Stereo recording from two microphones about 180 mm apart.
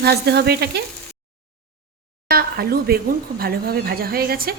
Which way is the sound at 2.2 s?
60° right (ahead or behind).